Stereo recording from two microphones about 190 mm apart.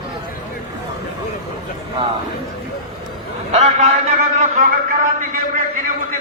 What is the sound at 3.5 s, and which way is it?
Speech, 35° right (ahead or behind).